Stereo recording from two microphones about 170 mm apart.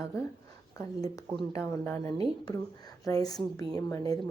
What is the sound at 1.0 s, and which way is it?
A woman's voice, 20° left (ahead or behind).